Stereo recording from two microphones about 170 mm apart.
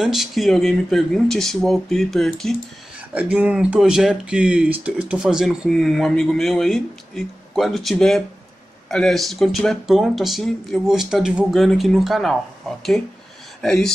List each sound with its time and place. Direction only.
0.0 s speech: centre (ahead or behind)